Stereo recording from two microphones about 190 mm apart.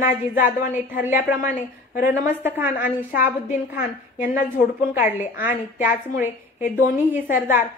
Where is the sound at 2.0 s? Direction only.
45° left (ahead or behind).